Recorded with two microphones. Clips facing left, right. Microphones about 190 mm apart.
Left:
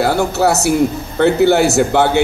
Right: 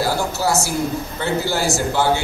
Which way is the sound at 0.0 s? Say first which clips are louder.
Left 7 dB; 65° left (ahead or behind).